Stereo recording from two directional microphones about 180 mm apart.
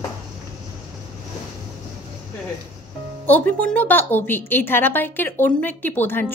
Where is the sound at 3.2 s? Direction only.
10° left (ahead or behind).